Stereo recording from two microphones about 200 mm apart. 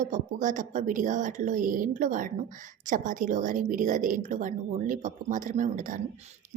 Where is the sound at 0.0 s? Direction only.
40° right (ahead or behind).